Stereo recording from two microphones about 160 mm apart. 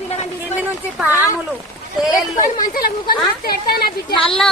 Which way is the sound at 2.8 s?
70° left (ahead or behind).